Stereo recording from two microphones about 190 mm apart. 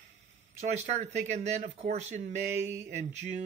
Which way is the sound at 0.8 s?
35° right (ahead or behind).